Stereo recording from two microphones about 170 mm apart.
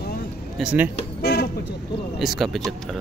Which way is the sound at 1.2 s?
70° left (ahead or behind).